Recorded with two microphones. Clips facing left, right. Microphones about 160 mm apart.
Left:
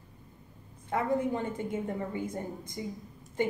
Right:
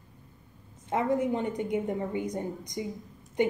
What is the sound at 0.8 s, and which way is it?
A woman's voice, 20° right (ahead or behind).